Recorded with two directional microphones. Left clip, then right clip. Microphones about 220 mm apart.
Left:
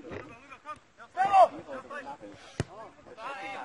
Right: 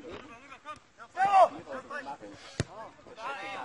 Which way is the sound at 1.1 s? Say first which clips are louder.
Left 1 dB; 15° right (ahead or behind).